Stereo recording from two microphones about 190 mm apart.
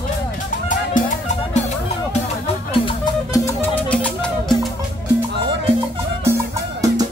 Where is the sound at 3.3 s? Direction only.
15° left (ahead or behind).